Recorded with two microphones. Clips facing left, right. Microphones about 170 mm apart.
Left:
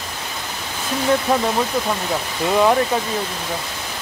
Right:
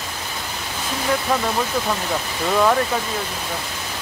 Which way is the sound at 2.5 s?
15° left (ahead or behind).